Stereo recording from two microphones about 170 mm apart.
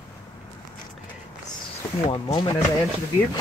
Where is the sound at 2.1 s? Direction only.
25° left (ahead or behind).